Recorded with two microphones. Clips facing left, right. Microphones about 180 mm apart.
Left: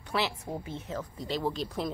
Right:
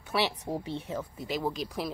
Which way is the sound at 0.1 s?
10° right (ahead or behind).